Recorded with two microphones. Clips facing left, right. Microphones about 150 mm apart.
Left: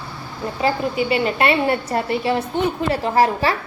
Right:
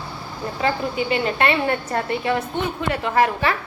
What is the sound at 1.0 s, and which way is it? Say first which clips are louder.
A woman's voice: left 2 dB; 10° left (ahead or behind).